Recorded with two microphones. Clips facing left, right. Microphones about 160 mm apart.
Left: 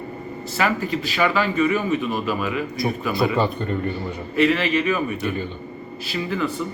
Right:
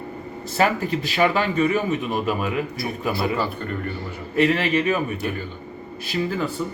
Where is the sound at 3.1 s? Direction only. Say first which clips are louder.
Left 2 dB; 20° left (ahead or behind).